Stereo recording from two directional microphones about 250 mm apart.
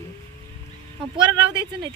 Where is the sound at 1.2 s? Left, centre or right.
Centre.